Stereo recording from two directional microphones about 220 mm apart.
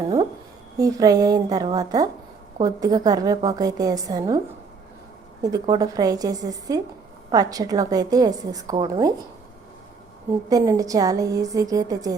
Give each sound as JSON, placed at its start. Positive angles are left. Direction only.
{"t": 0.8, "sound": "a woman's voice", "side_deg": -15}
{"t": 5.4, "sound": "a woman's voice", "side_deg": -15}
{"t": 10.5, "sound": "a woman's voice", "side_deg": -15}